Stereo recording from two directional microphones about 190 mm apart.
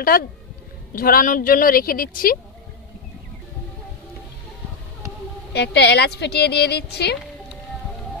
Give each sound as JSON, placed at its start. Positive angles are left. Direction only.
{"t": 0.1, "sound": "a woman's voice", "side_deg": 45}
{"t": 5.5, "sound": "a woman's voice", "side_deg": 60}